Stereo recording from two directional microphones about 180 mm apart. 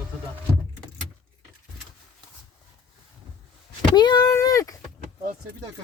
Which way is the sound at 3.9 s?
25° left (ahead or behind).